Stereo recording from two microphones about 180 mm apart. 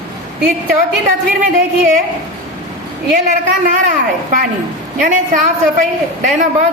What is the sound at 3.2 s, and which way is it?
A woman's voice, 45° right (ahead or behind).